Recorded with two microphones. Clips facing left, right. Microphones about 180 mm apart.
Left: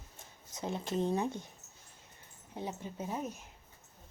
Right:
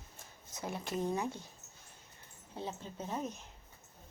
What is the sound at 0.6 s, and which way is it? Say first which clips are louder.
Speech: left 3 dB; 25° left (ahead or behind).